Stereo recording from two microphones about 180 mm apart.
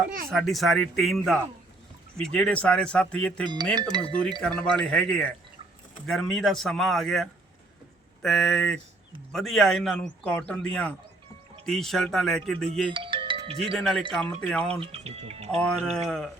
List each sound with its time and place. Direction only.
0.3 s speech: centre (ahead or behind)
12.9 s music: 30° right (ahead or behind)
13.7 s speech: centre (ahead or behind)
14.8 s speech: 35° right (ahead or behind)
15.5 s speech: 5° left (ahead or behind)